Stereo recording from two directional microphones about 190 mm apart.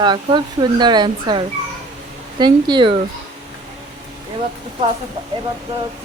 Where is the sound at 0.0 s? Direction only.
25° right (ahead or behind).